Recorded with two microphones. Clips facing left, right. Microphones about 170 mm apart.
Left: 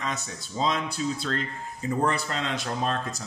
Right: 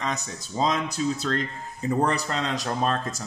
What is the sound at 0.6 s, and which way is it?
Speech, 45° right (ahead or behind).